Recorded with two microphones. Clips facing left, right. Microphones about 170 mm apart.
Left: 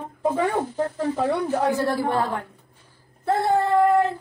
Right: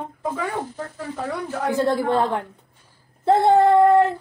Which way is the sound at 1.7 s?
20° right (ahead or behind).